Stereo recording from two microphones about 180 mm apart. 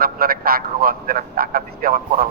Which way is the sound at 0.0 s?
55° right (ahead or behind).